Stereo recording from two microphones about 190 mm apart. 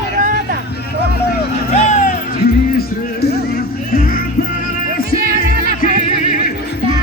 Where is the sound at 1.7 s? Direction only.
40° left (ahead or behind).